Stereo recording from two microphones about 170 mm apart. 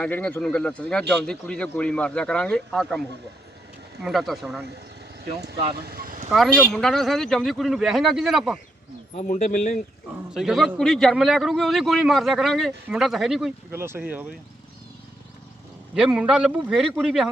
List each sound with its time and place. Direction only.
0.0 s speech: 10° left (ahead or behind)
4.0 s a man's voice: centre (ahead or behind)
5.8 s speech: 60° right (ahead or behind)
6.7 s a man's voice: centre (ahead or behind)
9.1 s speech: 50° left (ahead or behind)
10.3 s a man's voice: centre (ahead or behind)
13.7 s speech: 15° right (ahead or behind)
16.0 s a man's voice: 5° right (ahead or behind)